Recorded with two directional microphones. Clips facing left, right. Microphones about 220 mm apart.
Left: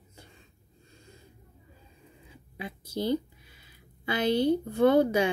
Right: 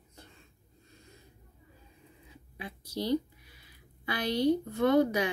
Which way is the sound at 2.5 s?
25° left (ahead or behind).